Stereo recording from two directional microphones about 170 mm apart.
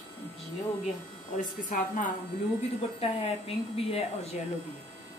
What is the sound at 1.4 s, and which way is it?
Speech, 50° left (ahead or behind).